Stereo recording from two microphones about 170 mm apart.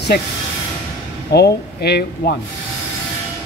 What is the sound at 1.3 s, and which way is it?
Speech, 70° left (ahead or behind).